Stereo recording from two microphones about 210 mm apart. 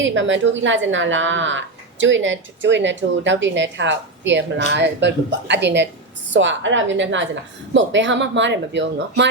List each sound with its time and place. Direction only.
0.0 s speech: 65° right (ahead or behind)